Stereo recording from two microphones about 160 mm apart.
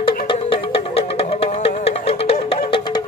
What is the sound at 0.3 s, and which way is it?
Music, 35° left (ahead or behind).